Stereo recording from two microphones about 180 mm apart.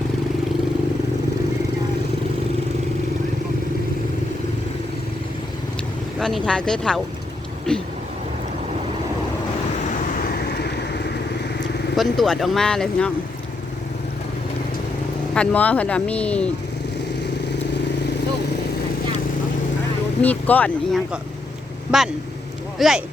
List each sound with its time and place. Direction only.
6.1 s speech: centre (ahead or behind)
10.2 s vehicle: 55° left (ahead or behind)
11.9 s speech: centre (ahead or behind)
15.4 s speech: 10° left (ahead or behind)
20.2 s speech: 10° left (ahead or behind)